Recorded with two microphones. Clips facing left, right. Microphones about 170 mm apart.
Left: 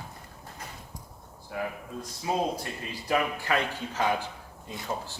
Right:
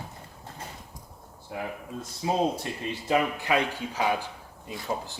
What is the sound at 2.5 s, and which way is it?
Speech, 25° right (ahead or behind).